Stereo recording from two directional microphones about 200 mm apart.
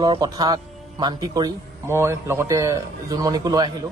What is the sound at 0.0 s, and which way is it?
Speech, 20° right (ahead or behind).